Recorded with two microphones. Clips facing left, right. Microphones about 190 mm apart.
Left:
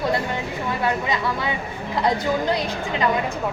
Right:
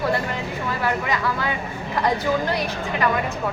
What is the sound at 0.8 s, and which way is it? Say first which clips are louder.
Speech: even; 20° left (ahead or behind).